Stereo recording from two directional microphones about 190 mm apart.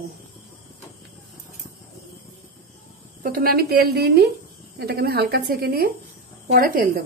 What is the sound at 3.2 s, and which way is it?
A woman's voice, 50° right (ahead or behind).